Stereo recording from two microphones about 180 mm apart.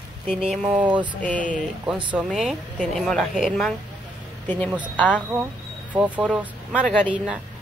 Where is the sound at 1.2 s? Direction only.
5° left (ahead or behind).